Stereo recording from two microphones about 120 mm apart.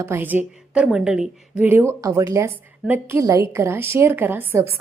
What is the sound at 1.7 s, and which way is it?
A woman's voice, 20° right (ahead or behind).